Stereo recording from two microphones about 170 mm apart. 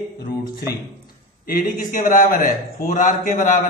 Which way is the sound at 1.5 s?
55° left (ahead or behind).